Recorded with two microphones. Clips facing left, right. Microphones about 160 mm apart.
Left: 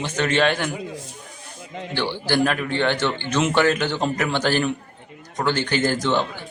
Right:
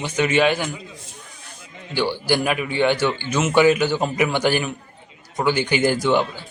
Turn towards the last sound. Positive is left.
turn(degrees=-10)  # may be behind; listen again after turning